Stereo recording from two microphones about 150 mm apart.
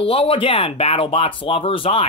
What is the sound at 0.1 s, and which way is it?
Speech, 35° left (ahead or behind).